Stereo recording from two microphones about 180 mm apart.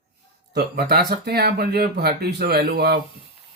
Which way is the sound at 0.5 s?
65° right (ahead or behind).